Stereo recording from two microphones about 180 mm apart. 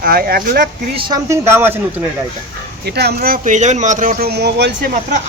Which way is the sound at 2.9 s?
65° right (ahead or behind).